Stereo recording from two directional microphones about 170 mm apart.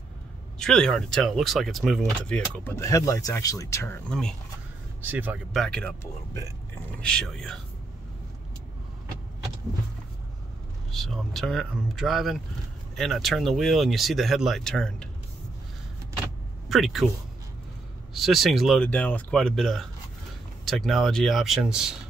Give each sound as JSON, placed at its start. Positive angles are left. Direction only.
{"t": 0.6, "sound": "speech", "side_deg": 5}
{"t": 5.0, "sound": "speech", "side_deg": -10}
{"t": 7.0, "sound": "speech", "side_deg": 5}
{"t": 10.9, "sound": "speech", "side_deg": 0}
{"t": 16.6, "sound": "speech", "side_deg": 0}
{"t": 18.1, "sound": "speech", "side_deg": 0}